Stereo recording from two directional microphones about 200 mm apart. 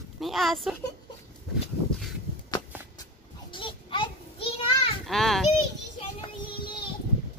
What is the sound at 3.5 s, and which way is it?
Children playing, 25° left (ahead or behind).